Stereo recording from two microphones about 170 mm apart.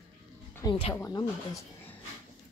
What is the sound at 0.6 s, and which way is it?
Speech, 30° left (ahead or behind).